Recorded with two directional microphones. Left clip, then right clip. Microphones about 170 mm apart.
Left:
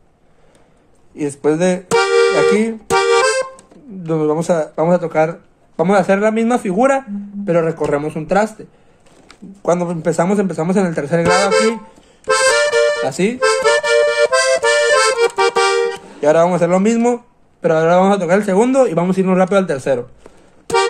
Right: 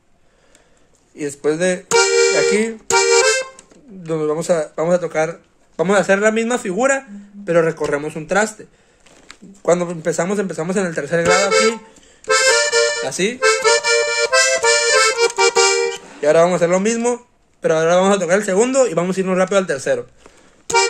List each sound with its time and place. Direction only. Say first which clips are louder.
1.1 s music: left 3 dB; 10° right (ahead or behind)
4.0 s speech: left 3 dB; 10° right (ahead or behind)
12.3 s accordion: left 1 dB; 20° right (ahead or behind)
16.2 s speech: left 1 dB; 10° right (ahead or behind)